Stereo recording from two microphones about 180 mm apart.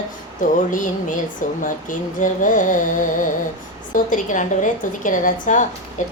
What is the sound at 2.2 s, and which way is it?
Music, 45° left (ahead or behind).